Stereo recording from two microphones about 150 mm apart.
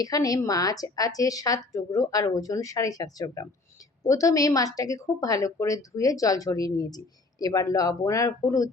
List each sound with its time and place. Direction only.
0.0 s speech: 25° left (ahead or behind)